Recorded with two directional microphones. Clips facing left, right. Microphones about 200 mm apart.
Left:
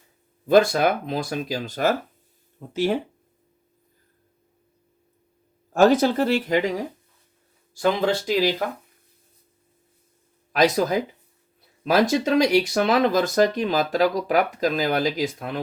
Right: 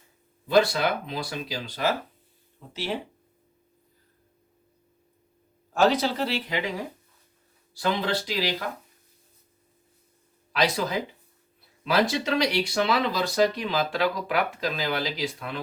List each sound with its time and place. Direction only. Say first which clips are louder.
0.4 s speech: left 5 dB; 50° left (ahead or behind)
5.7 s speech: left 6 dB; 50° left (ahead or behind)
10.5 s speech: left 6 dB; 45° left (ahead or behind)